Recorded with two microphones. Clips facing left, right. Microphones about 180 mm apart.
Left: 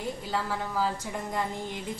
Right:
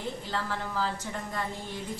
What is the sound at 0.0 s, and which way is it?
A woman's voice, 10° left (ahead or behind).